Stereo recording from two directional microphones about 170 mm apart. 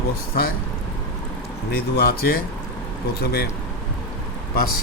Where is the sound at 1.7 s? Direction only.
65° left (ahead or behind).